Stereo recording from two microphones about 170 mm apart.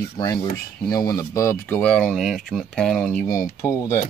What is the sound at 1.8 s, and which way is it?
Speech, 5° left (ahead or behind).